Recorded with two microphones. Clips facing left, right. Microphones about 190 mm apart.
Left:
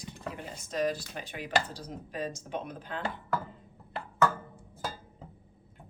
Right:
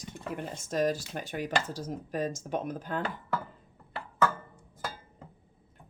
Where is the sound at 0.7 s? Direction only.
45° right (ahead or behind).